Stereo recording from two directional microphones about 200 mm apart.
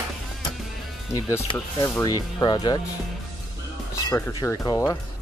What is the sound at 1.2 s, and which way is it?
Speech, 15° left (ahead or behind).